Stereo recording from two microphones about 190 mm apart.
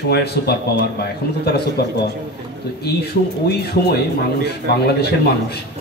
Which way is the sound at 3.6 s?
55° left (ahead or behind).